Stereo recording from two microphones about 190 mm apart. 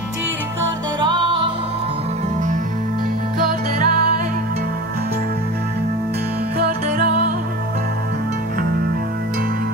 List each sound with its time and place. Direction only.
3.3 s music: 50° right (ahead or behind)